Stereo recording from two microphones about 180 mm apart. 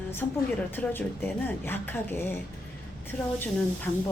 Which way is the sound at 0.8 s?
10° left (ahead or behind).